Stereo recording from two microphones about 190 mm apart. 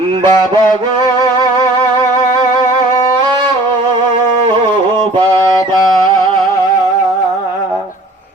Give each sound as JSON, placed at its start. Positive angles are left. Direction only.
{"t": 0.2, "sound": "music", "side_deg": -20}